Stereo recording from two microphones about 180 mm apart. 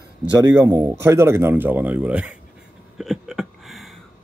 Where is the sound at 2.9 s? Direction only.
Centre (ahead or behind).